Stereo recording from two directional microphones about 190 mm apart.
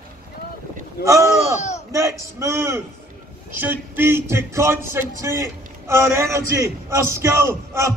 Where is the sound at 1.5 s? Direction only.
35° left (ahead or behind).